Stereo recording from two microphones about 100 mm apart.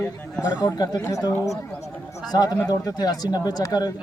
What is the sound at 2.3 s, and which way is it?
Speech, 45° left (ahead or behind).